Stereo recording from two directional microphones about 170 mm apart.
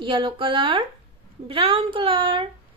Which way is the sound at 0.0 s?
30° right (ahead or behind).